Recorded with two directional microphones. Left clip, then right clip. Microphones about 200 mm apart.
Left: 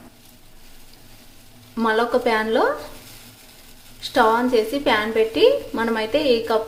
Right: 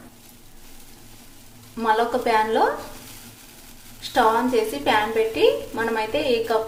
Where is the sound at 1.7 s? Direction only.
20° left (ahead or behind).